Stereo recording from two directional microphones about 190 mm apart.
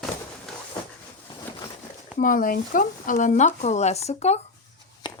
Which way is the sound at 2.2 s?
45° left (ahead or behind).